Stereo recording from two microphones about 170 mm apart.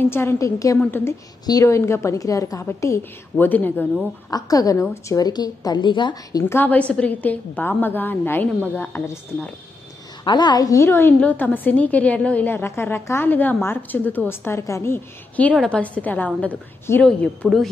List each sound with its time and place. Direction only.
0.1 s a woman's voice: 15° left (ahead or behind)
4.3 s a woman's voice: 20° left (ahead or behind)
6.5 s a woman's voice: 10° left (ahead or behind)
10.2 s a woman's voice: 25° left (ahead or behind); by 17.6 s 5° left (ahead or behind)